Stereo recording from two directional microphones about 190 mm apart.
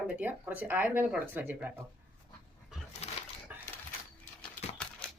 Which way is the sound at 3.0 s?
35° left (ahead or behind).